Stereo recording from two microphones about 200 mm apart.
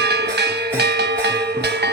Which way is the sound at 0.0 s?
55° right (ahead or behind).